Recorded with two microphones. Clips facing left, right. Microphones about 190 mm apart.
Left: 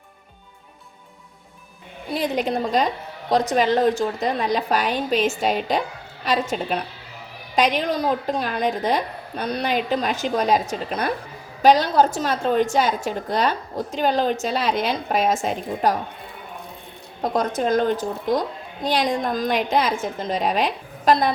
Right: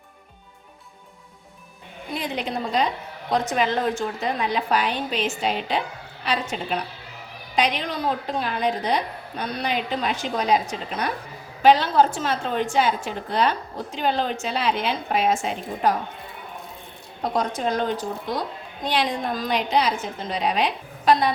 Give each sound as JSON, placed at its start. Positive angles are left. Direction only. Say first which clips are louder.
{"t": 2.1, "sound": "a woman's voice", "louder": "left 5 dB", "side_deg": 45}
{"t": 17.6, "sound": "a woman's voice", "louder": "left 4 dB", "side_deg": 50}